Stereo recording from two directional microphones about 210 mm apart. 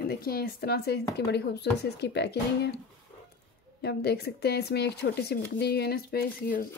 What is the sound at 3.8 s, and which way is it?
A woman's voice, 50° left (ahead or behind).